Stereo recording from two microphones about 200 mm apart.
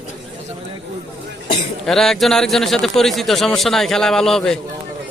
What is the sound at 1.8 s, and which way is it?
A man's voice, centre (ahead or behind).